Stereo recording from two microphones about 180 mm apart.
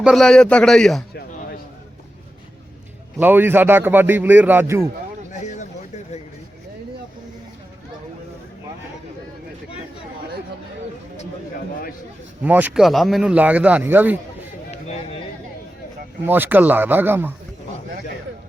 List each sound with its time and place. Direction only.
0.0 s a man's voice: centre (ahead or behind)
3.2 s speech: 10° right (ahead or behind)
5.3 s a sound: 40° left (ahead or behind)
12.4 s speech: 10° right (ahead or behind)
14.7 s a sound: 35° left (ahead or behind)
16.2 s speech: 10° right (ahead or behind)